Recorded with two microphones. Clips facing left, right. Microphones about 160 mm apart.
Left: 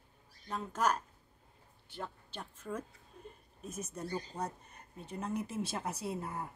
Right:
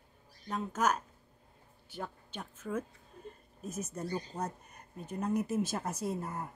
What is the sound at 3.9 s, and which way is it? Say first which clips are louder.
Speech: even; 10° right (ahead or behind).